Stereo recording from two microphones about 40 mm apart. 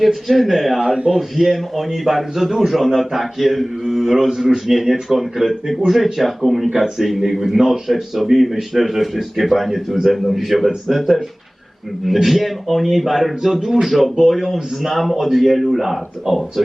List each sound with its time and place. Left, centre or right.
0.0 s a man's voice: centre
0.9 s speech: right
1.4 s a man's voice: centre
12.0 s a man's voice: centre